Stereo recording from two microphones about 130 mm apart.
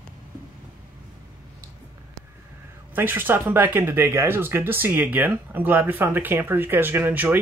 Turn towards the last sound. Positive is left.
turn(degrees=-15)  # may be behind; listen again after turning